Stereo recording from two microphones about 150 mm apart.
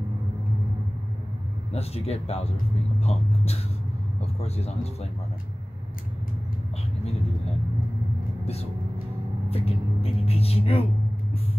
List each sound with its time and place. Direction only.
1.7 s speech: 45° left (ahead or behind)
9.5 s speech: 40° left (ahead or behind)